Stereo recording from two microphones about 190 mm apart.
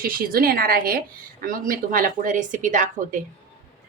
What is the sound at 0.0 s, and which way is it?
A woman's voice, 50° right (ahead or behind).